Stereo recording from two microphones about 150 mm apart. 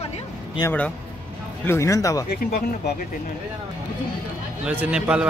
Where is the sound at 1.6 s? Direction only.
20° left (ahead or behind).